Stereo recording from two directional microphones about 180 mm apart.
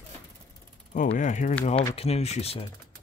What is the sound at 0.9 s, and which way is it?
Speech, 45° left (ahead or behind).